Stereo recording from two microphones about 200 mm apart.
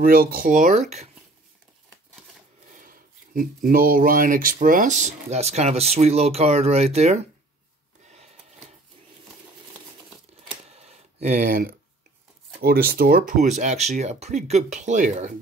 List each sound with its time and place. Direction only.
0.0 s speech: 45° right (ahead or behind)
2.7 s speech: 45° right (ahead or behind)
10.7 s a sound: 30° right (ahead or behind)
12.5 s speech: 50° right (ahead or behind)